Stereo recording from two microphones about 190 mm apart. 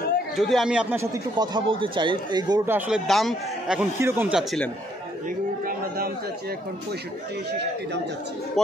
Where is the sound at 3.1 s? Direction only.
Centre (ahead or behind).